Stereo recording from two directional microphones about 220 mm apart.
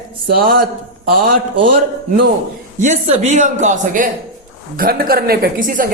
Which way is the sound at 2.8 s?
30° right (ahead or behind).